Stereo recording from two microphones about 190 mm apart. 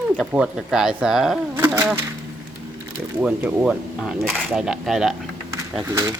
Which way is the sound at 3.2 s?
5° right (ahead or behind).